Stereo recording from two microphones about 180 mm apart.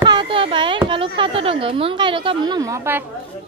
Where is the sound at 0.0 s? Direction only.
25° right (ahead or behind).